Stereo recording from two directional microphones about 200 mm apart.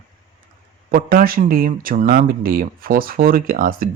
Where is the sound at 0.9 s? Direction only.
45° right (ahead or behind).